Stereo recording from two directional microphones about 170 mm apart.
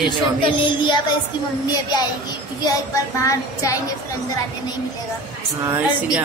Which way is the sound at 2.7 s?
20° left (ahead or behind).